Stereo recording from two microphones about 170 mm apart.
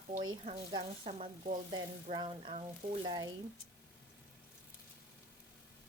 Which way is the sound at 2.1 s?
30° right (ahead or behind).